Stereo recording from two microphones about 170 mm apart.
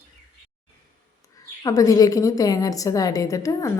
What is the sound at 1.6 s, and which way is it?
A woman's voice, 20° left (ahead or behind).